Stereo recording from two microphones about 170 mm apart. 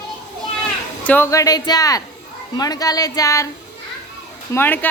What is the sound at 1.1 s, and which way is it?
Speech, 15° left (ahead or behind).